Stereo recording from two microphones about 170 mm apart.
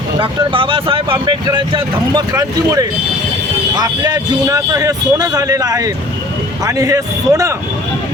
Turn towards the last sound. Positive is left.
turn(degrees=-20)  # may be behind; listen again after turning